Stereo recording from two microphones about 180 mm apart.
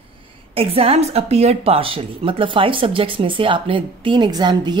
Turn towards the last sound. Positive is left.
turn(degrees=-25)  # may be behind; listen again after turning